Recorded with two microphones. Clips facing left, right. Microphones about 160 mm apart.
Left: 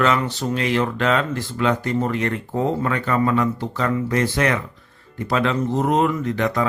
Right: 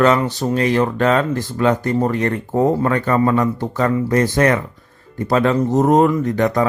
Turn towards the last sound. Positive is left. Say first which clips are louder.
# right 5 dB
turn(degrees=-45)  # may be behind; listen again after turning